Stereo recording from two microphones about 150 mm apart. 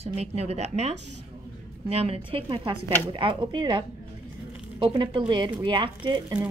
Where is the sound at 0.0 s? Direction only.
45° right (ahead or behind).